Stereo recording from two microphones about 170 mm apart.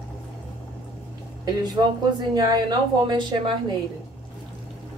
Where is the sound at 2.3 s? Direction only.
25° right (ahead or behind).